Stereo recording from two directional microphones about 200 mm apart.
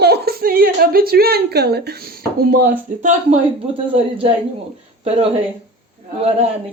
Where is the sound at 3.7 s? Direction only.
30° right (ahead or behind).